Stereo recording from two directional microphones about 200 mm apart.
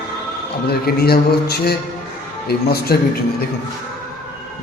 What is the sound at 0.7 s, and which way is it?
A man's voice, 50° left (ahead or behind).